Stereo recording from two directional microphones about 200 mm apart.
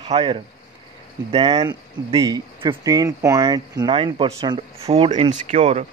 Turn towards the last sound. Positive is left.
turn(degrees=-35)  # may be behind; listen again after turning